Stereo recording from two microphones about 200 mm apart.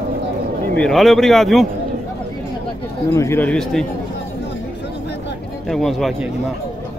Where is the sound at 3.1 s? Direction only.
15° left (ahead or behind).